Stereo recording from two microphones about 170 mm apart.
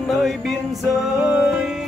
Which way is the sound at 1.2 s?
5° right (ahead or behind).